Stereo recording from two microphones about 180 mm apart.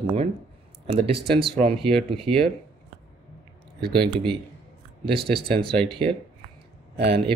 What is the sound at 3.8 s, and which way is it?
Speech, 60° right (ahead or behind).